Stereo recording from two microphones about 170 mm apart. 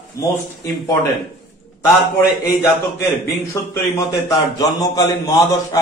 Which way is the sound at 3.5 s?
15° left (ahead or behind).